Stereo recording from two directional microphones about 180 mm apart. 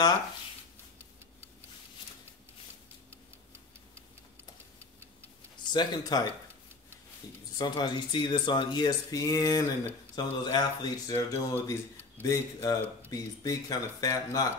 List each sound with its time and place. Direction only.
5.7 s speech: 20° left (ahead or behind)
7.5 s speech: 25° left (ahead or behind)